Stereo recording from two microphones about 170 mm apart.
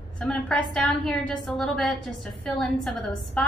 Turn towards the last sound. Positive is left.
turn(degrees=0)  # may be behind; listen again after turning